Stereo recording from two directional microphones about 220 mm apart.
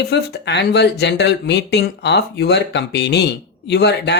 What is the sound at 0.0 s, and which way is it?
Speech, 50° left (ahead or behind).